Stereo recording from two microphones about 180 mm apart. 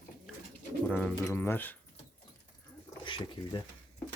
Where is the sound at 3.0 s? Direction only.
25° left (ahead or behind).